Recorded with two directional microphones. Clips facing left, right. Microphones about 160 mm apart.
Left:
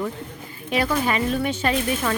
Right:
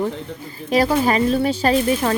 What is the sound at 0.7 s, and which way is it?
Speech, 40° right (ahead or behind).